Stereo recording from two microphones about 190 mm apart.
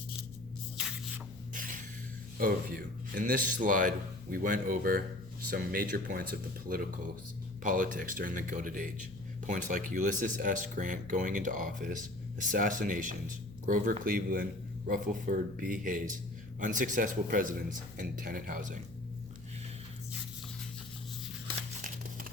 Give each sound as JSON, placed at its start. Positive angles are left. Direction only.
{"t": 2.4, "sound": "speech", "side_deg": -50}